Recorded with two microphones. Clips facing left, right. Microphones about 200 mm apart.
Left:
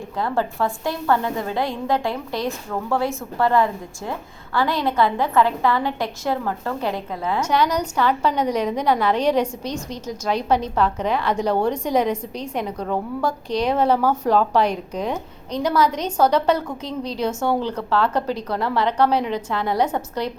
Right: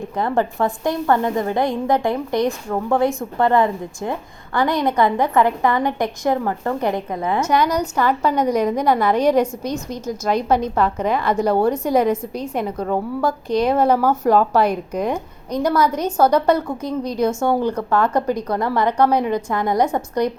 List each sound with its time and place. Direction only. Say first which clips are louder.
0.2 s a woman's voice: right 3 dB; 20° right (ahead or behind)